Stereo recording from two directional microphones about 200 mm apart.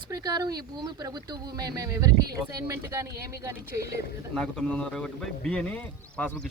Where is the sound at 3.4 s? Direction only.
15° right (ahead or behind).